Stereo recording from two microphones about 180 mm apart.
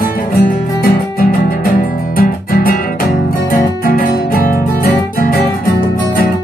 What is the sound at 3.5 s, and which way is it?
Guitar, 50° left (ahead or behind).